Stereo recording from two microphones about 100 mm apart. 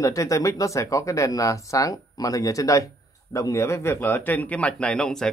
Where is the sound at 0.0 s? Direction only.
35° left (ahead or behind).